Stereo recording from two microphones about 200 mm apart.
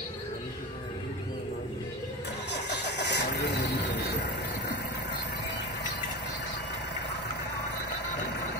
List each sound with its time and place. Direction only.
2.5 s vehicle: 60° left (ahead or behind)